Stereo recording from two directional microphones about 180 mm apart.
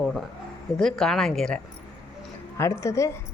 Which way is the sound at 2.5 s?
15° left (ahead or behind).